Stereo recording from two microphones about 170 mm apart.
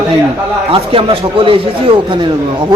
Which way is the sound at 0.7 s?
30° right (ahead or behind).